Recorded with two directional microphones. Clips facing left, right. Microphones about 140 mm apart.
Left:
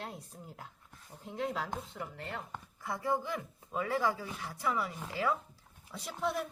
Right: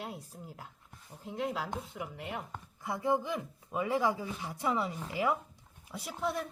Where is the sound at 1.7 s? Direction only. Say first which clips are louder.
Right 1 dB; 10° right (ahead or behind).